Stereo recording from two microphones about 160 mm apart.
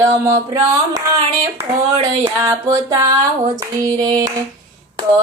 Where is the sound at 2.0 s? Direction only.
20° right (ahead or behind).